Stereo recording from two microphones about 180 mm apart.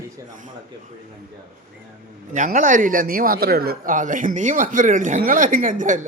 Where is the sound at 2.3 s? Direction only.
45° right (ahead or behind).